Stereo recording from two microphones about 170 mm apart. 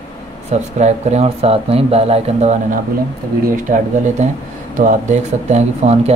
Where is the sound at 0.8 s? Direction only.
40° right (ahead or behind).